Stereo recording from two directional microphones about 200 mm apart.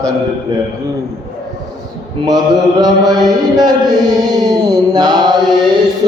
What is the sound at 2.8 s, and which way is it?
Chant, 20° right (ahead or behind).